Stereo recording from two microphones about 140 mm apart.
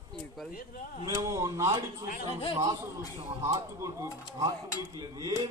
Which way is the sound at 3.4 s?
25° right (ahead or behind).